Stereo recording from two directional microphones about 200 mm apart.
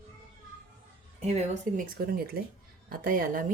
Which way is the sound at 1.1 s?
35° right (ahead or behind).